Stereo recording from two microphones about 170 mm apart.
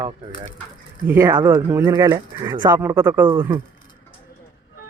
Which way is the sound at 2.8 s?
15° right (ahead or behind).